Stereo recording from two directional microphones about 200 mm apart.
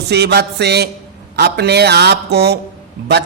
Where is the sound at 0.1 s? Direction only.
55° right (ahead or behind).